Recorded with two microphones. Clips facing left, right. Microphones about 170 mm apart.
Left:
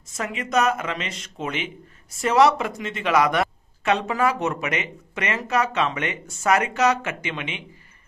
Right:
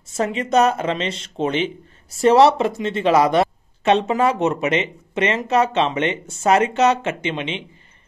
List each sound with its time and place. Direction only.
0.1 s speech: 30° right (ahead or behind)